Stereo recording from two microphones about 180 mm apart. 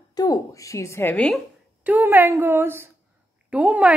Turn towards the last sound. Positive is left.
turn(degrees=-10)  # may be behind; listen again after turning